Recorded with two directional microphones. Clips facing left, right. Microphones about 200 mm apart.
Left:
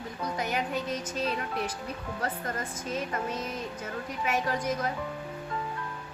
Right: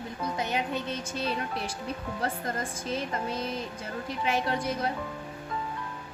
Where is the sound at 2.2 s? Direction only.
30° right (ahead or behind).